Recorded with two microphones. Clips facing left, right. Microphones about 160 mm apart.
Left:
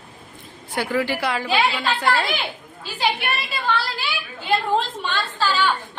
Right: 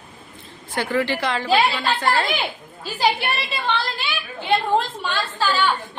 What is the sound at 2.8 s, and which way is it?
Speech, 35° right (ahead or behind).